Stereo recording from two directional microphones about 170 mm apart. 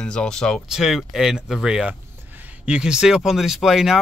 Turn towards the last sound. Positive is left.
turn(degrees=0)  # may be behind; listen again after turning